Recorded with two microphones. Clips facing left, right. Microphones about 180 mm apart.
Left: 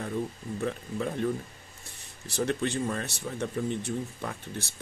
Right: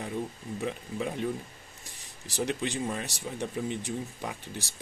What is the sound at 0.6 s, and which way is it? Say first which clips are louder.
Speech: left 2 dB; 15° right (ahead or behind).